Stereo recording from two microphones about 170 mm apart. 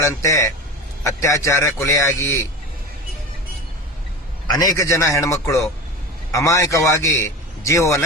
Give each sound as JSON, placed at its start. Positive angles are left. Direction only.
{"t": 0.0, "sound": "a man's voice", "side_deg": 20}
{"t": 4.4, "sound": "a man's voice", "side_deg": 20}